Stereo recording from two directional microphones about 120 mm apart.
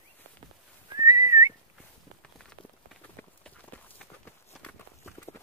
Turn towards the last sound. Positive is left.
turn(degrees=10)  # may be behind; listen again after turning